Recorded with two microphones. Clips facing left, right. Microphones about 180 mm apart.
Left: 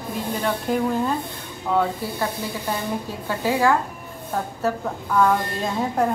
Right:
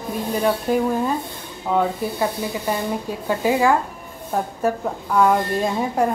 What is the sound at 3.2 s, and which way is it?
A woman's voice, 15° right (ahead or behind).